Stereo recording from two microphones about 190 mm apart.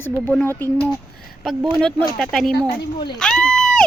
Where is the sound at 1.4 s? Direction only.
5° left (ahead or behind).